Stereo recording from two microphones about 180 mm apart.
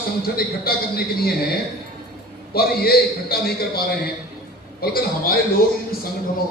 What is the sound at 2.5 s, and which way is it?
A man's voice, 60° left (ahead or behind).